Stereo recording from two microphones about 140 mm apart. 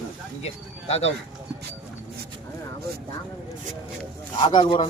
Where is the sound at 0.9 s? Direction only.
45° left (ahead or behind).